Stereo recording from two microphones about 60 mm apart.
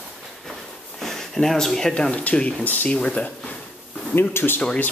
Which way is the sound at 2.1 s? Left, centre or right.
Left.